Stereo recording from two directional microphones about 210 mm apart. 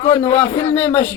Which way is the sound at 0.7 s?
10° left (ahead or behind).